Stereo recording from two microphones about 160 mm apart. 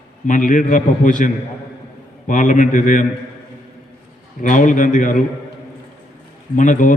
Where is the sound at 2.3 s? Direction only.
55° left (ahead or behind).